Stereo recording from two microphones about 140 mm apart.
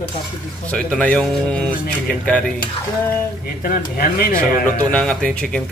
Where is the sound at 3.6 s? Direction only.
90° left.